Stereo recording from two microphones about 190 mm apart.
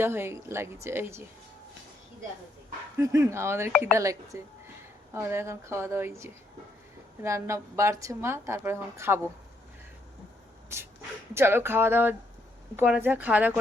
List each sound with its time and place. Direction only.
0.0 s a woman's voice: 10° right (ahead or behind)
3.0 s a woman's voice: 15° right (ahead or behind)
11.3 s a woman's voice: 10° right (ahead or behind)